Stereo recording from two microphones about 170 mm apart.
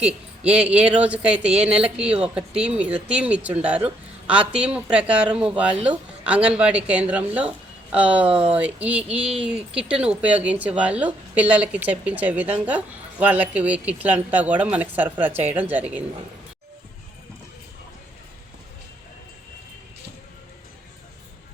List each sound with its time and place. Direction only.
0.0 s speech: 5° right (ahead or behind)
8.3 s speech: 35° right (ahead or behind)
8.5 s speech: 10° right (ahead or behind)